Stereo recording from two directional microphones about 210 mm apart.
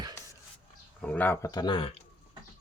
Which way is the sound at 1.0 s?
5° left (ahead or behind).